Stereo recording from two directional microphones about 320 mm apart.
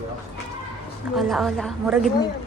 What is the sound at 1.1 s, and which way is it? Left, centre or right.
Speech, centre.